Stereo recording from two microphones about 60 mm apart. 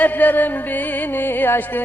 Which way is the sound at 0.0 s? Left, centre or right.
Left.